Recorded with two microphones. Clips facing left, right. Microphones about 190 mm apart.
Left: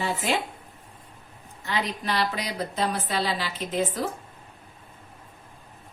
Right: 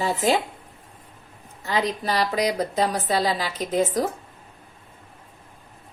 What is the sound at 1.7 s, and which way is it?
A woman's voice, 40° right (ahead or behind).